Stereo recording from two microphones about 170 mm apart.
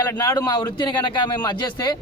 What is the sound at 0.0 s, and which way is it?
Speech, 20° left (ahead or behind).